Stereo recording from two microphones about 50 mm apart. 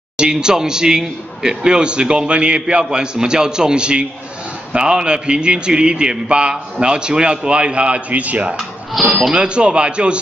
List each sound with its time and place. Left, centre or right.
0.2 s a man's voice: centre
9.0 s speech: centre
9.3 s a man's voice: centre